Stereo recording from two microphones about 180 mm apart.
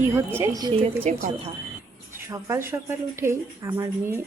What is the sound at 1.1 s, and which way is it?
Speech, 40° right (ahead or behind).